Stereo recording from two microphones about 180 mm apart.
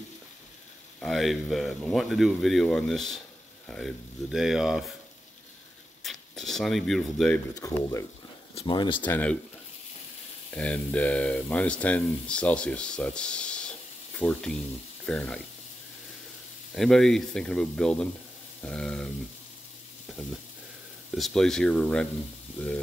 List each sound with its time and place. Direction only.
0.9 s speech: centre (ahead or behind)
6.0 s speech: centre (ahead or behind)
7.5 s speech: 20° left (ahead or behind)
9.0 s speech: 10° left (ahead or behind)
10.5 s speech: 5° left (ahead or behind)
16.7 s speech: centre (ahead or behind)
21.1 s speech: centre (ahead or behind)